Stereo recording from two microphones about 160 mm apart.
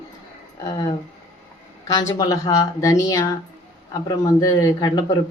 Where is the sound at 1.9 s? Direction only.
25° left (ahead or behind).